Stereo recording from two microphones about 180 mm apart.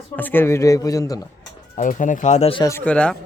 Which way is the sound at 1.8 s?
45° left (ahead or behind).